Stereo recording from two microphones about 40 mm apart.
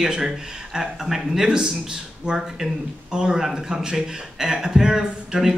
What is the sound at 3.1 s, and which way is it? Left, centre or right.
Speech, centre.